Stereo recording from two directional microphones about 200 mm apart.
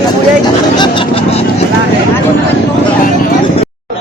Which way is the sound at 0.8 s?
25° left (ahead or behind).